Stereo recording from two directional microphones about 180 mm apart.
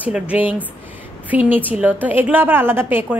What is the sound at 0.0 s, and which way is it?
Speech, 10° right (ahead or behind).